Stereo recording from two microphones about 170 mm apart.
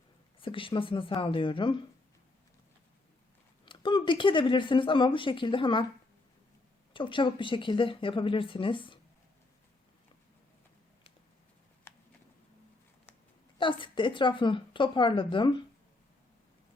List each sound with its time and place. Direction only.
0.3 s speech: 30° left (ahead or behind)
3.7 s speech: 30° left (ahead or behind)
6.9 s speech: 30° left (ahead or behind)
11.9 s a sound: 15° left (ahead or behind)
13.6 s speech: 30° left (ahead or behind)